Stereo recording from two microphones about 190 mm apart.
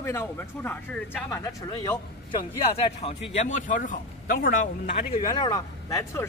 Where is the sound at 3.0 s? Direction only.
30° left (ahead or behind).